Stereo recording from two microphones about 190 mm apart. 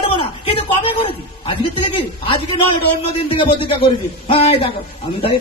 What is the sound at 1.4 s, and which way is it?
A man's voice, 30° left (ahead or behind).